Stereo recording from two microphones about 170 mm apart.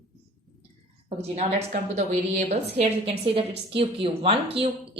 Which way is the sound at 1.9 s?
40° right (ahead or behind).